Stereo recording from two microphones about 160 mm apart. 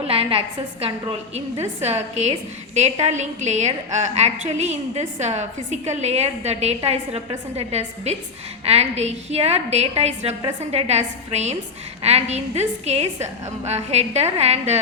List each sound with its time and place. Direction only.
0.0 s a woman's voice: 35° right (ahead or behind)